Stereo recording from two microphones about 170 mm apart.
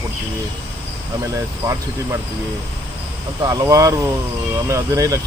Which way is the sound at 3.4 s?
20° right (ahead or behind).